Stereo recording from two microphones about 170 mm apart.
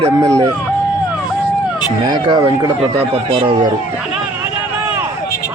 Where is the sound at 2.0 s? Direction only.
25° right (ahead or behind).